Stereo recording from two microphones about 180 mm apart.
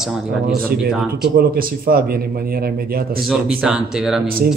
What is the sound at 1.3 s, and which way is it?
A man's voice, 55° right (ahead or behind).